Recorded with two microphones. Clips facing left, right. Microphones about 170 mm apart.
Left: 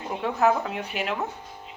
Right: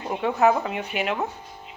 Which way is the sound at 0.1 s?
Centre (ahead or behind).